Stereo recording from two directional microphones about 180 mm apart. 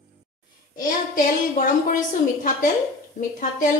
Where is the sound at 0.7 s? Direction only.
50° left (ahead or behind).